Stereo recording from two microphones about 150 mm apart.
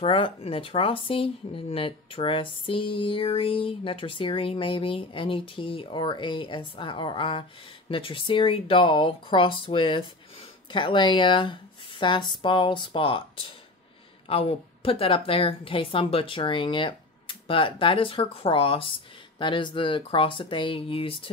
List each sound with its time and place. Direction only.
0.0 s speech: 35° left (ahead or behind)